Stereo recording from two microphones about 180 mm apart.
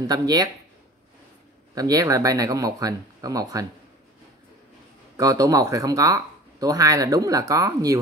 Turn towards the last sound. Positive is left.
turn(degrees=-20)  # may be behind; listen again after turning